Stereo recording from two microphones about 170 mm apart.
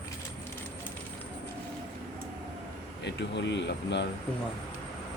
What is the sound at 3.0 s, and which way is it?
Speech, 90° left.